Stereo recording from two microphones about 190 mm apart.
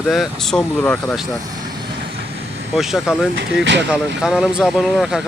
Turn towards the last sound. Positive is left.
turn(degrees=0)  # may be behind; listen again after turning